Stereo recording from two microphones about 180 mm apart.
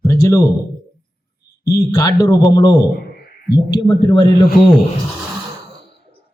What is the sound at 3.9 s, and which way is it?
Speech, 25° left (ahead or behind).